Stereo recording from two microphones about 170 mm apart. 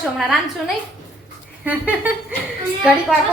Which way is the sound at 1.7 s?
10° right (ahead or behind).